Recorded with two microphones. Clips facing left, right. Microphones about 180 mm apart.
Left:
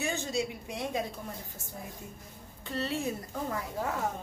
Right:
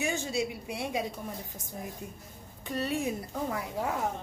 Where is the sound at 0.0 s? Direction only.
15° right (ahead or behind).